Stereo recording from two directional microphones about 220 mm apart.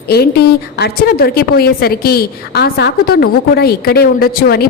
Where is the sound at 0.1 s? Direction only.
45° left (ahead or behind).